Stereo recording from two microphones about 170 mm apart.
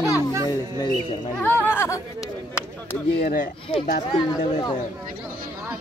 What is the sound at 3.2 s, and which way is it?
Speech, 60° left (ahead or behind).